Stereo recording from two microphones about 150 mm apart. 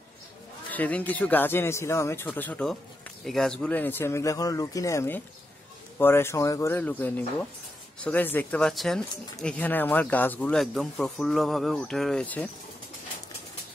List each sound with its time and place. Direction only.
0.7 s speech: 10° left (ahead or behind)